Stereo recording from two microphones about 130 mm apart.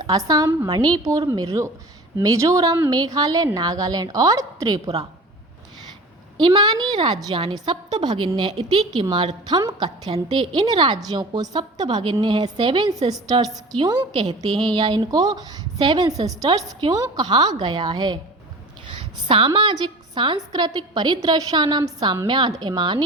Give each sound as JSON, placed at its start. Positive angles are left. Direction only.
{"t": 0.0, "sound": "a woman's voice", "side_deg": -30}
{"t": 6.4, "sound": "a woman's voice", "side_deg": -35}